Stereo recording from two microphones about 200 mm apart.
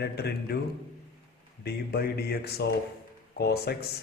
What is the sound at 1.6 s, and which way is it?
A man's voice, 50° left (ahead or behind).